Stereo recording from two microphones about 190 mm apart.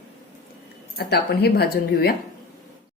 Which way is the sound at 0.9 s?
60° left (ahead or behind).